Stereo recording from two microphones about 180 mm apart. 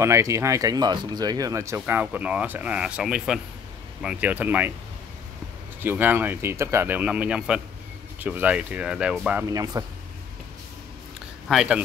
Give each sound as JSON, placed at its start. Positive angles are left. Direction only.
{"t": 0.0, "sound": "speech", "side_deg": -15}
{"t": 5.8, "sound": "speech", "side_deg": -10}
{"t": 9.5, "sound": "speech", "side_deg": -20}
{"t": 11.4, "sound": "speech", "side_deg": -5}